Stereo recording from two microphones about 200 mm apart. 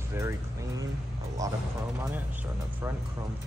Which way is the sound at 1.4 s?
15° right (ahead or behind).